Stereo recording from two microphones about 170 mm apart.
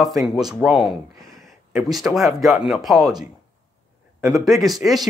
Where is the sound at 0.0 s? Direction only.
Centre (ahead or behind).